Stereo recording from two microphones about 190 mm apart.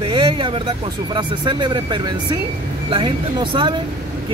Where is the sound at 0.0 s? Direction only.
25° right (ahead or behind).